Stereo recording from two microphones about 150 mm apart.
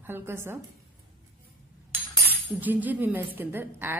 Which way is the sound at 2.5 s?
10° right (ahead or behind).